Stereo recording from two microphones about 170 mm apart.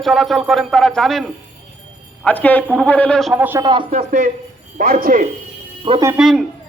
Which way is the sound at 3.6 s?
25° right (ahead or behind).